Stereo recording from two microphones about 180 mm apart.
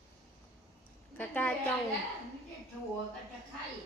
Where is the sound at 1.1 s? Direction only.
10° left (ahead or behind).